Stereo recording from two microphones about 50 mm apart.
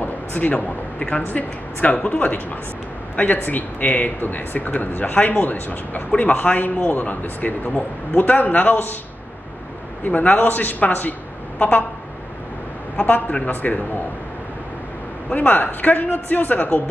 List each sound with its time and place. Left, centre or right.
0.0 s a woman's voice: left
3.4 s speech: left
10.0 s speech: left
12.9 s speech: left
15.2 s speech: left